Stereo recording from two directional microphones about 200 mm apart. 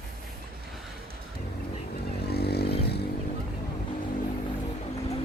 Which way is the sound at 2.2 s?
55° left (ahead or behind).